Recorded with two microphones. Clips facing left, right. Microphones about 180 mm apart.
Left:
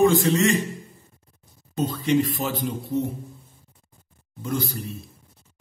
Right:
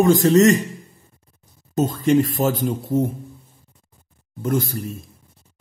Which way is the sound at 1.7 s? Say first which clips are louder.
Right 5 dB; 45° right (ahead or behind).